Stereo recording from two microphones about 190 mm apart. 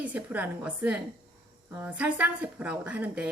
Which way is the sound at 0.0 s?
10° right (ahead or behind).